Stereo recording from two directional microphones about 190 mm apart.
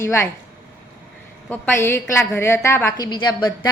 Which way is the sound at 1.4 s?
10° left (ahead or behind).